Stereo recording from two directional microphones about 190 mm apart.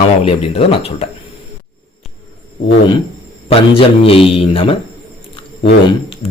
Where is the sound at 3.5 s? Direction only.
30° left (ahead or behind).